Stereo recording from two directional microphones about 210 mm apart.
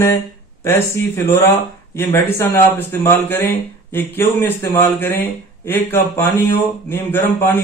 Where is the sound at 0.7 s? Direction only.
10° left (ahead or behind).